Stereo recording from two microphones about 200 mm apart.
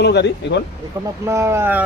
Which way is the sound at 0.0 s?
60° left (ahead or behind).